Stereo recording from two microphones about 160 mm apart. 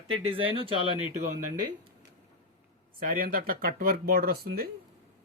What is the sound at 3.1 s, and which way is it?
Speech, 65° right (ahead or behind).